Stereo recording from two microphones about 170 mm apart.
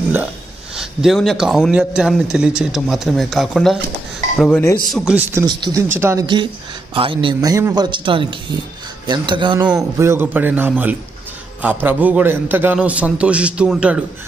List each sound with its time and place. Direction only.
0.7 s speech: centre (ahead or behind)
4.9 s a man's voice: 5° right (ahead or behind)
5.5 s a man's voice: 25° right (ahead or behind)
6.2 s speech: 30° right (ahead or behind)
7.3 s speech: 20° right (ahead or behind)
9.6 s a man's voice: 10° right (ahead or behind)